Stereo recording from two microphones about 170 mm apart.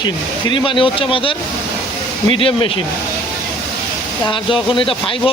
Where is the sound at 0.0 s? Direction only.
25° left (ahead or behind).